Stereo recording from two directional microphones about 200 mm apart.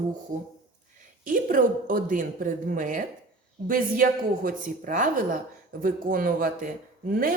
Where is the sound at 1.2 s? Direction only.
45° right (ahead or behind).